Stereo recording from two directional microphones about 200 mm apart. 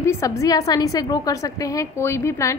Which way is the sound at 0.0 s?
15° left (ahead or behind).